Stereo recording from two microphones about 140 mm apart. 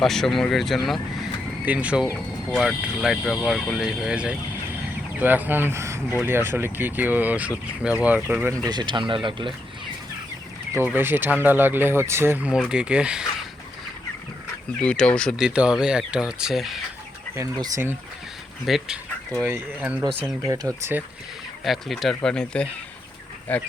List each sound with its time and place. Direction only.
0.0 s speech: centre (ahead or behind)
1.6 s speech: 10° right (ahead or behind)
8.6 s speech: 30° right (ahead or behind)
10.8 s speech: 15° right (ahead or behind)
14.8 s speech: 10° left (ahead or behind)
15.4 s speech: 5° right (ahead or behind)
17.3 s speech: 20° right (ahead or behind)
18.6 s speech: centre (ahead or behind)
19.5 s speech: 15° right (ahead or behind)
20.4 s speech: 20° right (ahead or behind)
21.6 s speech: centre (ahead or behind)